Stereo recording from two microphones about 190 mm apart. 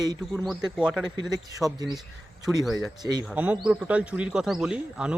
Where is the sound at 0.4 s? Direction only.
5° right (ahead or behind).